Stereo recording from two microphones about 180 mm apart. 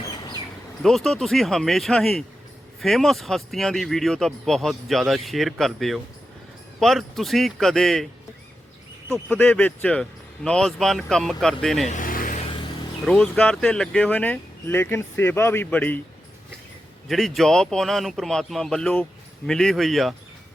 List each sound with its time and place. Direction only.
0.8 s speech: centre (ahead or behind)
9.1 s speech: 10° left (ahead or behind)
11.9 s vehicle: 50° left (ahead or behind)
13.1 s speech: 5° left (ahead or behind)
17.1 s speech: centre (ahead or behind)